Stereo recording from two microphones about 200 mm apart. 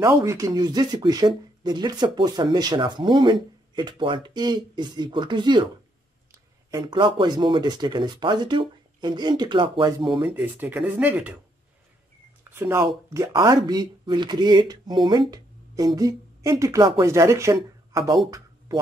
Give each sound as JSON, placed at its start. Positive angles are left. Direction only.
{"t": 0.0, "sound": "speech", "side_deg": -15}
{"t": 6.7, "sound": "speech", "side_deg": -25}
{"t": 10.2, "sound": "speech", "side_deg": -10}
{"t": 12.4, "sound": "speech", "side_deg": -10}